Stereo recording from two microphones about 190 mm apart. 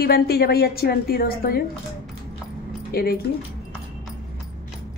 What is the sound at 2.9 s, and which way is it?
Speech, 55° left (ahead or behind).